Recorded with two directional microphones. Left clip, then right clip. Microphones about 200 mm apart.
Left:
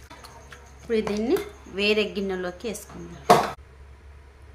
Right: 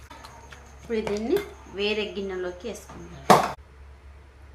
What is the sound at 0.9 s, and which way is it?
A woman's voice, 60° left (ahead or behind).